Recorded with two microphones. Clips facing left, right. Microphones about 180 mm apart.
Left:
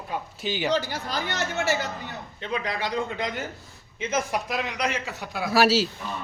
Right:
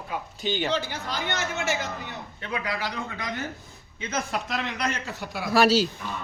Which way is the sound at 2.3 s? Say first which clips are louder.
Left 2 dB; 25° left (ahead or behind).